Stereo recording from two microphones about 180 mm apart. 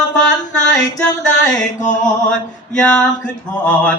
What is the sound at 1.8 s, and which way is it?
Music, 45° left (ahead or behind).